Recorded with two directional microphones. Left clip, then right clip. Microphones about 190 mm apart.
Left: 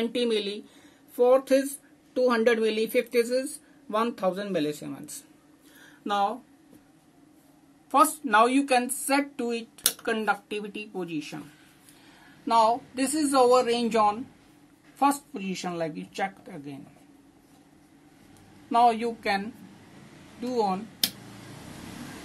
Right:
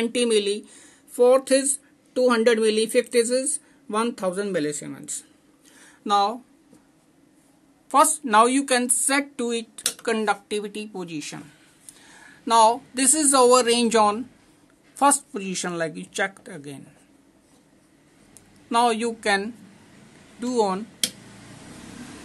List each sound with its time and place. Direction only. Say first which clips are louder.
0.0 s speech: right 5 dB; 30° right (ahead or behind)
5.8 s a sound: right 5 dB; 30° right (ahead or behind)
7.9 s a woman's voice: right 3 dB; 35° right (ahead or behind)
12.4 s a woman's voice: right 5 dB; 35° right (ahead or behind)
18.7 s a woman's voice: right 1 dB; 30° right (ahead or behind)